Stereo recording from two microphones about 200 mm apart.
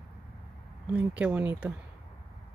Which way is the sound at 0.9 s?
5° right (ahead or behind).